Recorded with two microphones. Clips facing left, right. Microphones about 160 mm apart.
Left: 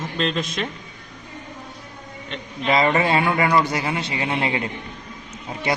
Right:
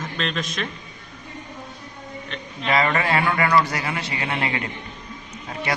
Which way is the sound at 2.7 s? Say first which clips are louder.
Left 3 dB; 20° left (ahead or behind).